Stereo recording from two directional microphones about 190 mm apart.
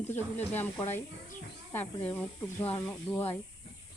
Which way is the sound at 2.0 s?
10° left (ahead or behind).